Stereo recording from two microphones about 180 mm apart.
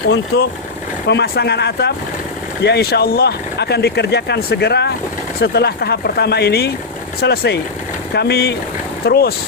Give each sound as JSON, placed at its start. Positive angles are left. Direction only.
{"t": 1.0, "sound": "speech", "side_deg": 65}